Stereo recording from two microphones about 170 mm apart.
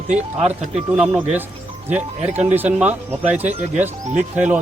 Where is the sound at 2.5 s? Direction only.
10° right (ahead or behind).